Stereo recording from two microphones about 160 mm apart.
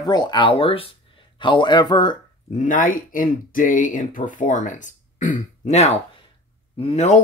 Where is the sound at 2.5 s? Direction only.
55° left (ahead or behind).